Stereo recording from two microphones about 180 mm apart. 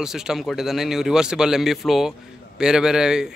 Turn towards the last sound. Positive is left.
turn(degrees=-5)  # may be behind; listen again after turning